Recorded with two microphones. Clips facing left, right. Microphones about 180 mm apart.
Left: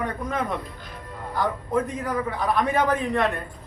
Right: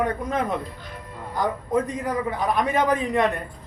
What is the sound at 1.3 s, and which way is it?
A man's voice, 15° right (ahead or behind).